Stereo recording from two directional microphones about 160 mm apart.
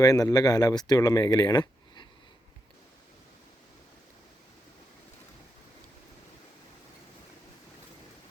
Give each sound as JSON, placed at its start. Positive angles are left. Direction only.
{"t": 0.0, "sound": "speech", "side_deg": 20}